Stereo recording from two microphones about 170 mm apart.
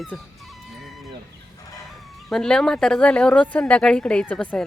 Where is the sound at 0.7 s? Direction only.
Centre (ahead or behind).